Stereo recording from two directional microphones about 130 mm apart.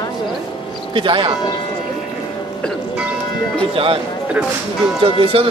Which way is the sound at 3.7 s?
45° right (ahead or behind).